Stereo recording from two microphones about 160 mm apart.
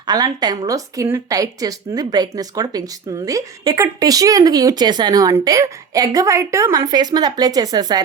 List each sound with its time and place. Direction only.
0.0 s speech: 25° right (ahead or behind)